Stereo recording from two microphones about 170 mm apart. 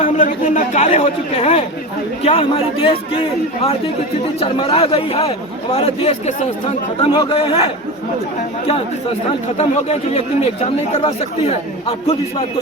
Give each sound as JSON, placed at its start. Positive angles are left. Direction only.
{"t": 0.2, "sound": "speech", "side_deg": 50}
{"t": 9.6, "sound": "speech", "side_deg": 40}